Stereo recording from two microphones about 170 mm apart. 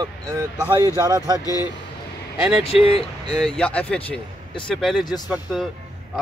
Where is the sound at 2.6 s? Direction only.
35° left (ahead or behind).